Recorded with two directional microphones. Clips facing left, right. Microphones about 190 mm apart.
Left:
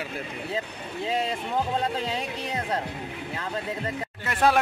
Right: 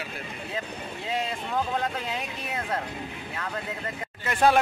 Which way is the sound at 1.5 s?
30° left (ahead or behind).